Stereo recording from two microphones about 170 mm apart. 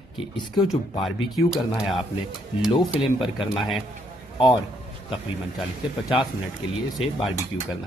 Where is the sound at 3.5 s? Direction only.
Centre (ahead or behind).